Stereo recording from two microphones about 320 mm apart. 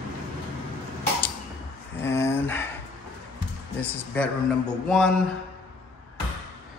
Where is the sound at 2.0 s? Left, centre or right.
Centre.